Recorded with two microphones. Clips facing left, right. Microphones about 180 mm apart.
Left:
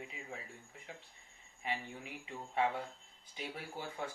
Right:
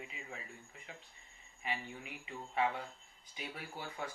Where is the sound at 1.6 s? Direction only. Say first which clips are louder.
Left 1 dB; 30° left (ahead or behind).